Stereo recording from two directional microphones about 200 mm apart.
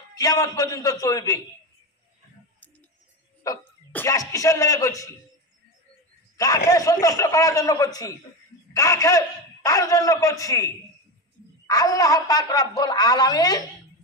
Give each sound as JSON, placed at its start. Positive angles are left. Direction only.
{"t": 0.2, "sound": "a man's voice", "side_deg": 20}
{"t": 3.4, "sound": "speech", "side_deg": 15}
{"t": 6.3, "sound": "a man's voice", "side_deg": 15}